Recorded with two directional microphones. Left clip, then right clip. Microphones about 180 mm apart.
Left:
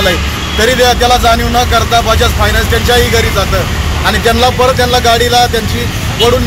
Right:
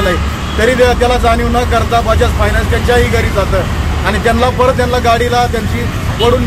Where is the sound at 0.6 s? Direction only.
15° right (ahead or behind).